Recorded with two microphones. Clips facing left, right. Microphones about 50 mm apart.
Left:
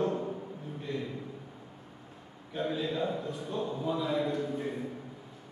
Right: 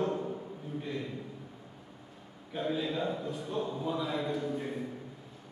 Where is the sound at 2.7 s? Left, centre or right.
Centre.